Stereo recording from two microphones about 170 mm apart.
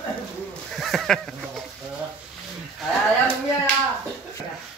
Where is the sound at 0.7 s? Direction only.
Centre (ahead or behind).